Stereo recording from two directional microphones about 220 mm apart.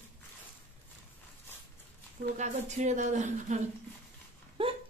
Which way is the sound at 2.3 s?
35° right (ahead or behind).